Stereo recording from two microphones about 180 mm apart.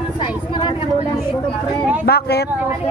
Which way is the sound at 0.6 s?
30° left (ahead or behind).